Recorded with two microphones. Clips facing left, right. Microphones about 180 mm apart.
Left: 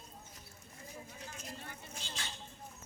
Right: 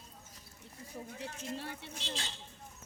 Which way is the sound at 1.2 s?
70° right (ahead or behind).